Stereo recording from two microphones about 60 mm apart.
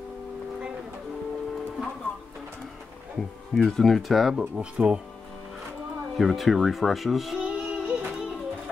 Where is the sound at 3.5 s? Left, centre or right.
Centre.